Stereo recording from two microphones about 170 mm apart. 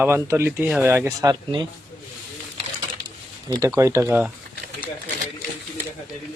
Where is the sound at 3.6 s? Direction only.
15° right (ahead or behind).